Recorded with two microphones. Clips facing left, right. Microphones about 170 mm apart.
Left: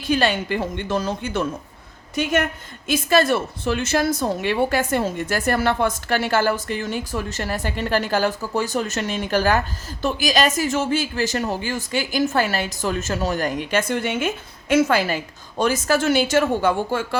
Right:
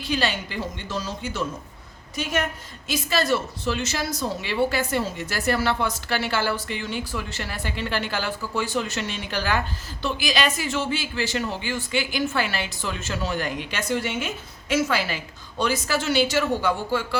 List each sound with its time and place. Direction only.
0.0 s a woman's voice: 50° left (ahead or behind)
2.8 s a woman's voice: 50° left (ahead or behind)